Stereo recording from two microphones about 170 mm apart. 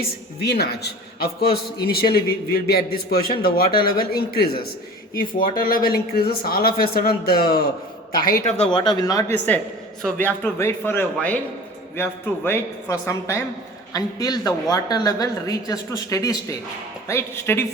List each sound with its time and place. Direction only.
0.4 s a man's voice: 70° left (ahead or behind)
8.5 s a woman's voice: 30° left (ahead or behind)
10.0 s a man's voice: 10° left (ahead or behind)